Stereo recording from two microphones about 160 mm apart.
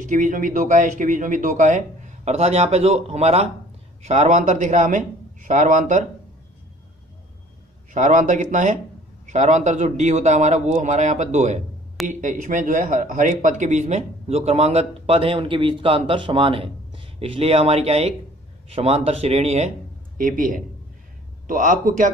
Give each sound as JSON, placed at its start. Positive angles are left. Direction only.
{"t": 0.0, "sound": "a man's voice", "side_deg": -55}
{"t": 7.9, "sound": "a man's voice", "side_deg": -50}
{"t": 20.2, "sound": "a man's voice", "side_deg": -60}